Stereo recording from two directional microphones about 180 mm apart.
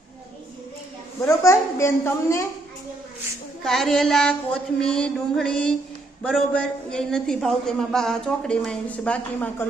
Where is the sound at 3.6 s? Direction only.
Centre (ahead or behind).